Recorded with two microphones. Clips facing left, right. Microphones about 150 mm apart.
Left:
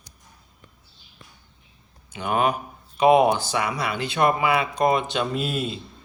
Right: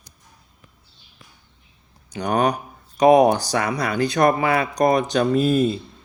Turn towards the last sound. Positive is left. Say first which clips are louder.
# right 9 dB
turn(degrees=-40)  # may be behind; listen again after turning